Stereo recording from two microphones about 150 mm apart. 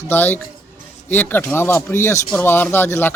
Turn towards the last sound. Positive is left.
turn(degrees=15)  # may be behind; listen again after turning